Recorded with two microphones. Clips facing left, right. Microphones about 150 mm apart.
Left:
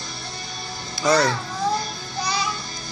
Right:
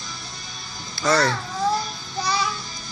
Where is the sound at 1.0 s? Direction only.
15° left (ahead or behind).